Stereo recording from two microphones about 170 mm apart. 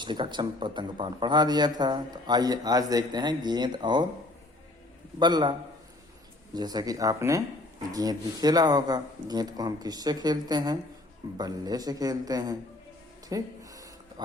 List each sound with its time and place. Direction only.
0.0 s a man's voice: 25° right (ahead or behind)
5.2 s a man's voice: 25° right (ahead or behind)
13.2 s a sound: 20° right (ahead or behind)